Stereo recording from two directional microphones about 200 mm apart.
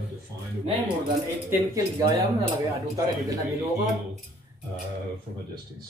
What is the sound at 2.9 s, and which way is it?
Speech, 15° right (ahead or behind).